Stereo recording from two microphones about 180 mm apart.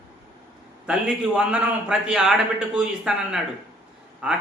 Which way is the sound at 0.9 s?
5° right (ahead or behind).